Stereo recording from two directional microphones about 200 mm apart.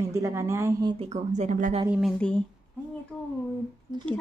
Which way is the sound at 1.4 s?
40° right (ahead or behind).